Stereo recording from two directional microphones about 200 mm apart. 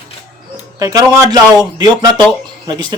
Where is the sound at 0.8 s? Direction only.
20° right (ahead or behind).